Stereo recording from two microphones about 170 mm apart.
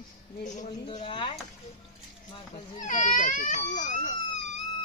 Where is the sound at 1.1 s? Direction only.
30° left (ahead or behind).